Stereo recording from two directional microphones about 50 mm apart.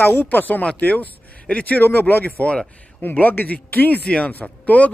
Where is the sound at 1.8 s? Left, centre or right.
Left.